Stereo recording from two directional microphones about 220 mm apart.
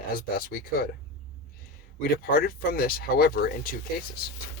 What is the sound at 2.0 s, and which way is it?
Speech, 45° left (ahead or behind).